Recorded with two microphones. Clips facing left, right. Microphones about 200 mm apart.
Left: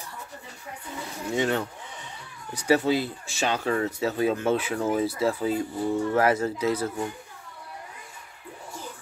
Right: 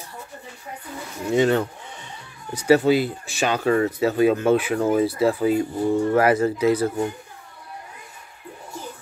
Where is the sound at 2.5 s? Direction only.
25° right (ahead or behind).